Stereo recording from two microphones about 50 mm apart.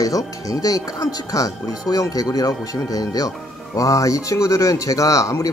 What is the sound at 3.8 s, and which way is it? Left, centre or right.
Speech, left.